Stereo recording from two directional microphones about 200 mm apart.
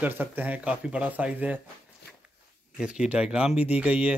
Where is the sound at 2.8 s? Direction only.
5° right (ahead or behind).